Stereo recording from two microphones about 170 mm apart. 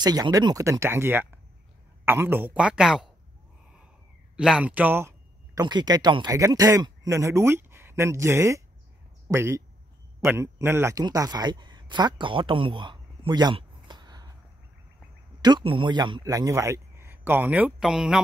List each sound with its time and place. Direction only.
0.0 s a man's voice: 20° right (ahead or behind); by 3.1 s 5° right (ahead or behind)
4.4 s a man's voice: 5° right (ahead or behind); by 14.3 s 25° right (ahead or behind)
15.4 s a man's voice: 30° right (ahead or behind); by 18.2 s 5° right (ahead or behind)